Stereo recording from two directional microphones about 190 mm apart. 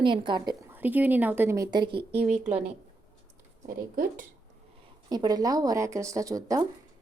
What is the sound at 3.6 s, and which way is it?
Speech, 50° right (ahead or behind).